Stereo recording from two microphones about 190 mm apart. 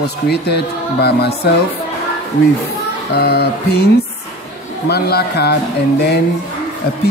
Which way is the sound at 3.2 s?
55° left (ahead or behind).